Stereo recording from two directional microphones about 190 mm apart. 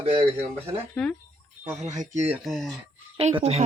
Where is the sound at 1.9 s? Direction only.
40° right (ahead or behind).